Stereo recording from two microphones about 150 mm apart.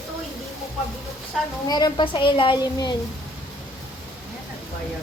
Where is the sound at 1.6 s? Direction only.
25° left (ahead or behind).